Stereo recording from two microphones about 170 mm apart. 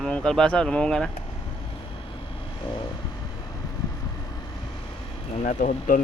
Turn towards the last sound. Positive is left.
turn(degrees=50)  # may be behind; listen again after turning